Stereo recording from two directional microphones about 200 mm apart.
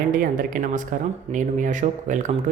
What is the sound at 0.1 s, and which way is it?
Speech, 45° right (ahead or behind).